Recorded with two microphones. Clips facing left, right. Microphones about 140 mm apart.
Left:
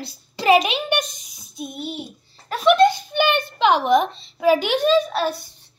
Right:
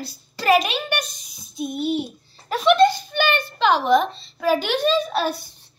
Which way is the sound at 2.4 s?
5° left (ahead or behind).